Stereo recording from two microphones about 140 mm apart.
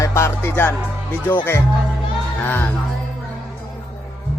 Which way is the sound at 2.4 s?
10° left (ahead or behind).